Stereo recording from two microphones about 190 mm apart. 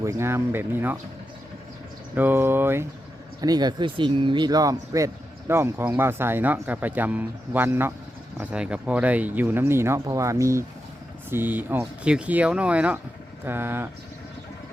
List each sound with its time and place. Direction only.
0.0 s speech: 15° right (ahead or behind)
2.1 s speech: 10° right (ahead or behind)